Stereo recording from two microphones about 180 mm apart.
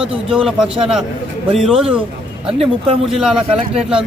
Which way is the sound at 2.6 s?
30° right (ahead or behind).